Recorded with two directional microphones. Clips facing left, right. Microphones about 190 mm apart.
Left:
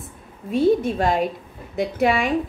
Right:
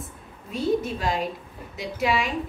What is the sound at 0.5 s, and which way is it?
A woman's voice, 55° left (ahead or behind).